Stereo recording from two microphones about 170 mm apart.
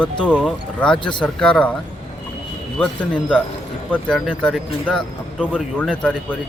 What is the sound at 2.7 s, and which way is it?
Speech, 5° left (ahead or behind).